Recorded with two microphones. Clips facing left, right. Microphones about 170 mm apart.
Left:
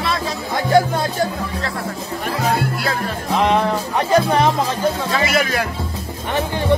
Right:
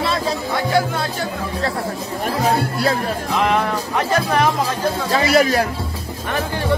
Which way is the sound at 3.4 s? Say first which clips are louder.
Left 3 dB; 30° left (ahead or behind).